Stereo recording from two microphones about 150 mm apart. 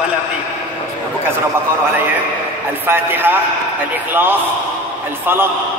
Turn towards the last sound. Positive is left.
turn(degrees=-15)  # may be behind; listen again after turning